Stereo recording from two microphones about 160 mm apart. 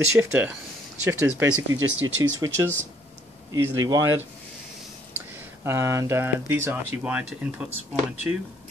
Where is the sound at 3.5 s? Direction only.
20° right (ahead or behind).